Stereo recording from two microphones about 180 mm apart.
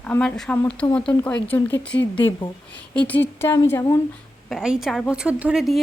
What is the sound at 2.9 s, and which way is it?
Speech, 10° left (ahead or behind).